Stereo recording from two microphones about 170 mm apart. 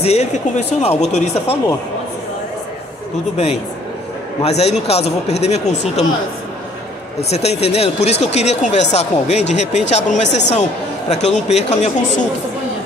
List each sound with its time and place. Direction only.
0.0 s speech: 40° left (ahead or behind)
4.4 s speech: 40° left (ahead or behind)
7.2 s speech: 40° left (ahead or behind)